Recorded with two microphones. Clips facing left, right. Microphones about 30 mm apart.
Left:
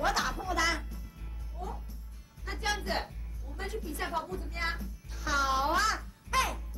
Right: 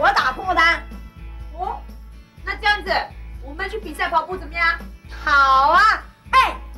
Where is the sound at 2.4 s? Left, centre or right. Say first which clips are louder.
Right 14 dB; right.